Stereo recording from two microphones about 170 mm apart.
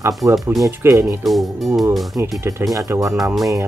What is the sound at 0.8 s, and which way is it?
Speech, 15° right (ahead or behind).